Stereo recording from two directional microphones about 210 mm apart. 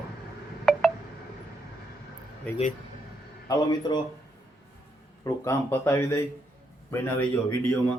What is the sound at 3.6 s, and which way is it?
Speech, 20° left (ahead or behind).